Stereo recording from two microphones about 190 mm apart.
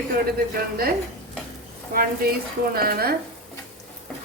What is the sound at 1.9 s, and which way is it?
Speech, 50° right (ahead or behind).